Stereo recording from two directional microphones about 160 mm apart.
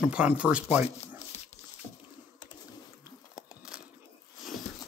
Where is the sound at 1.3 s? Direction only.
40° left (ahead or behind).